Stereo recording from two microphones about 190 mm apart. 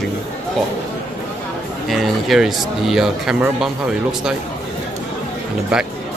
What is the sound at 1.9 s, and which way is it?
Speech, centre (ahead or behind).